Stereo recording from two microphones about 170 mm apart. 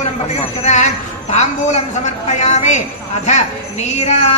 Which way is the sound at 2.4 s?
45° left (ahead or behind).